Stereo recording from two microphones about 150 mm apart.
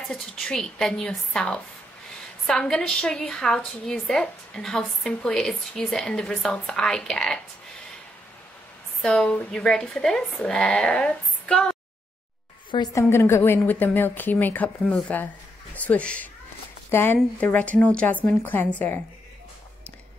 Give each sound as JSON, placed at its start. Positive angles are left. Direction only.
{"t": 0.1, "sound": "a woman's voice", "side_deg": 5}
{"t": 9.0, "sound": "a woman's voice", "side_deg": 5}
{"t": 12.7, "sound": "a woman's voice", "side_deg": 25}
{"t": 13.0, "sound": "a woman's voice", "side_deg": 15}